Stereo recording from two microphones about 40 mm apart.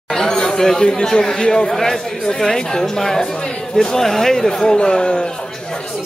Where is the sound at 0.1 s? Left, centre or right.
Centre.